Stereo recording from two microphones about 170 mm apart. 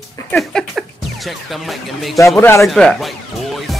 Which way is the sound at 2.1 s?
15° left (ahead or behind).